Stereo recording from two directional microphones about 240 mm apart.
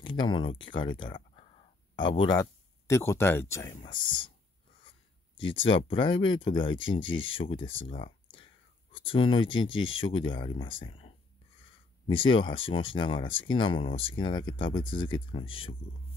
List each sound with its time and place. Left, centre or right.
0.0 s speech: centre
5.4 s speech: left
8.9 s speech: left